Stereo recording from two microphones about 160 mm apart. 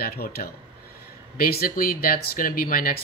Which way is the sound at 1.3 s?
65° left (ahead or behind).